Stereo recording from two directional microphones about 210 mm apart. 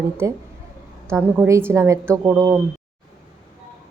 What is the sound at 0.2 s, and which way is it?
Speech, 15° right (ahead or behind).